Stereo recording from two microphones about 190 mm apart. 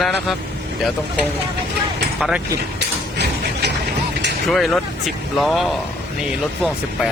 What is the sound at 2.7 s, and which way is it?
Mechanisms, 60° right (ahead or behind).